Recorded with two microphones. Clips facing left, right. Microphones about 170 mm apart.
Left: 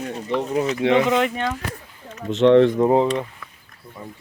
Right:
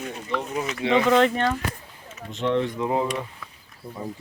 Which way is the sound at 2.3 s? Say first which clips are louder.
Left 11 dB; 75° left (ahead or behind).